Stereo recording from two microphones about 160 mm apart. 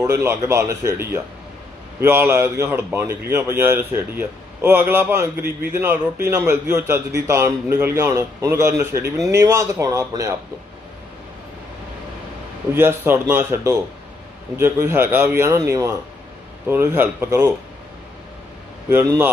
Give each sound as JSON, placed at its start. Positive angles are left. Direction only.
{"t": 0.0, "sound": "a man's voice", "side_deg": -15}
{"t": 12.7, "sound": "a man's voice", "side_deg": -15}
{"t": 18.9, "sound": "a man's voice", "side_deg": -15}